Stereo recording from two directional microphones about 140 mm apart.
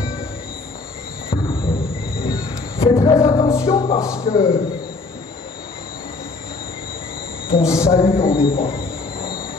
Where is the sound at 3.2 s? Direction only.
25° left (ahead or behind).